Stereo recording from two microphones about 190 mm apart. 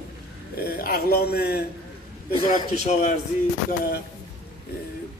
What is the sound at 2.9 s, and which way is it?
Speech, 40° left (ahead or behind).